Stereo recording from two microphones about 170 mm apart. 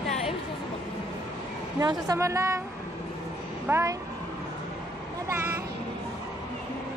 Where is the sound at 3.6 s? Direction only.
15° right (ahead or behind).